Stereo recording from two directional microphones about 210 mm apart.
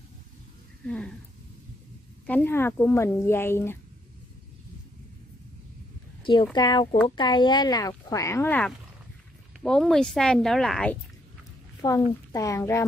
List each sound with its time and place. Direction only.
0.8 s speech: 5° left (ahead or behind)
2.2 s speech: 10° left (ahead or behind)
6.2 s speech: 20° left (ahead or behind); by 11.0 s 5° left (ahead or behind)
11.8 s speech: 15° left (ahead or behind)